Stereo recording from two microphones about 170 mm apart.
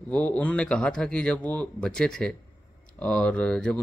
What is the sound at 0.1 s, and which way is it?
Speech, 5° left (ahead or behind).